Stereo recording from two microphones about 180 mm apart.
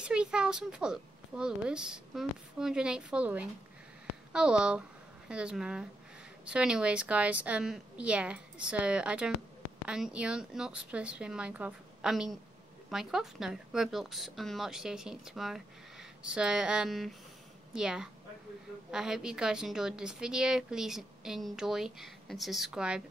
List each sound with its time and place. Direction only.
0.0 s a woman's voice: 5° right (ahead or behind)